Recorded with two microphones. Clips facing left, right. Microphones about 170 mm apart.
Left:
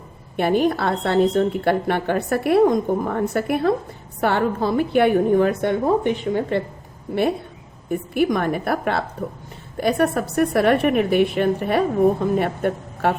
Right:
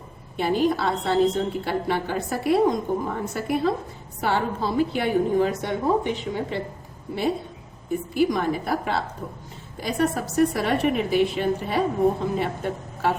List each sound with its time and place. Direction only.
0.3 s a woman's voice: 60° left (ahead or behind)
7.9 s a woman's voice: 60° left (ahead or behind)